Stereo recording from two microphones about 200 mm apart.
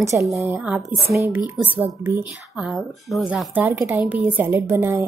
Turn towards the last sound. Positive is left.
turn(degrees=-10)  # may be behind; listen again after turning